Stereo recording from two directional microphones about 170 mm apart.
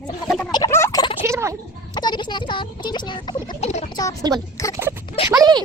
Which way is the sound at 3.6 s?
40° left (ahead or behind).